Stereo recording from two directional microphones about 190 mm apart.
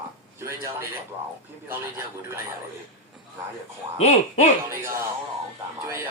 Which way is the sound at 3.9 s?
35° left (ahead or behind).